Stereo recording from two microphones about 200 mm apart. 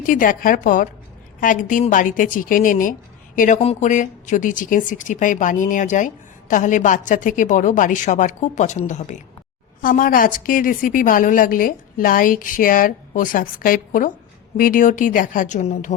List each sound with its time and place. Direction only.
0.0 s a woman's voice: 40° left (ahead or behind)